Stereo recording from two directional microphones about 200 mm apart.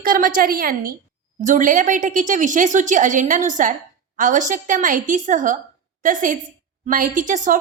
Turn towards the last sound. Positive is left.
turn(degrees=-40)  # may be behind; listen again after turning